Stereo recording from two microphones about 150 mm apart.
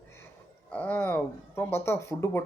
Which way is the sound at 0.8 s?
15° left (ahead or behind).